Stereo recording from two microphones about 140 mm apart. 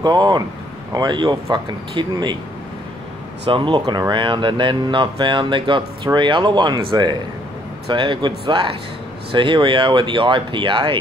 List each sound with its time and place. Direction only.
0.0 s speech: 30° right (ahead or behind)
3.4 s speech: 35° right (ahead or behind)